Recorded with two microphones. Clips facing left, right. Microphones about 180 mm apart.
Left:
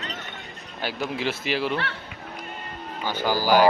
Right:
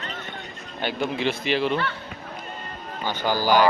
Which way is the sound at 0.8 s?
5° left (ahead or behind).